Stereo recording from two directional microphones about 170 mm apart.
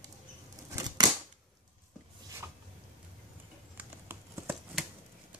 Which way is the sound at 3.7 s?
15° right (ahead or behind).